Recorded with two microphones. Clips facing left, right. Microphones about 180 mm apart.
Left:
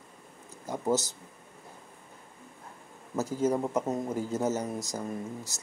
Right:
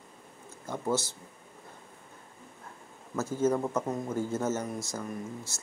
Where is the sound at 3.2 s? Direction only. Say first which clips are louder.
Even; 15° left (ahead or behind).